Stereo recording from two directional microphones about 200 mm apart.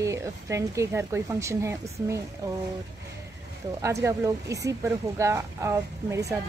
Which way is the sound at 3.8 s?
15° right (ahead or behind).